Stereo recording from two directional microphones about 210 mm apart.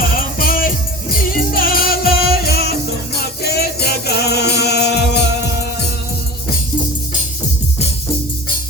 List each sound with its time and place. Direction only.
0.2 s music: 45° left (ahead or behind)